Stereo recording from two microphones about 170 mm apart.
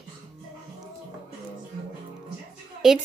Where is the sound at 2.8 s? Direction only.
5° right (ahead or behind).